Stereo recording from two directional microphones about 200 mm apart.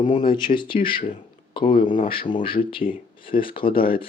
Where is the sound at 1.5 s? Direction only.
25° left (ahead or behind).